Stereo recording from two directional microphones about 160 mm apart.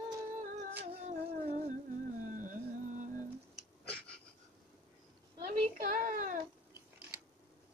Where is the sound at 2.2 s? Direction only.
55° right (ahead or behind).